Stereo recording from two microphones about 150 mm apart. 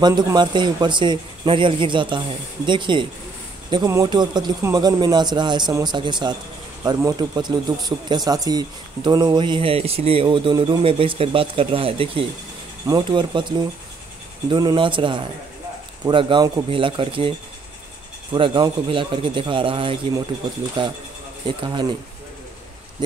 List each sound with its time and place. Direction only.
0.0 s speech: 30° right (ahead or behind)
18.3 s speech: 30° right (ahead or behind)